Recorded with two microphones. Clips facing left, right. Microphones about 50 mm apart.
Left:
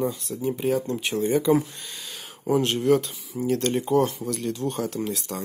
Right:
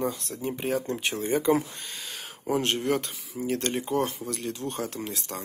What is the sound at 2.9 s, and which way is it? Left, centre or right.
Speech, right.